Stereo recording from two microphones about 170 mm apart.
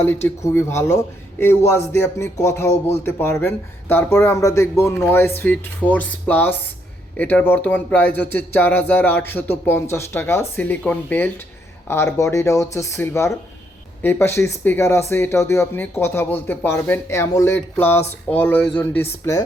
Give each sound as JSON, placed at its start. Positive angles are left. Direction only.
{"t": 0.4, "sound": "speech", "side_deg": 15}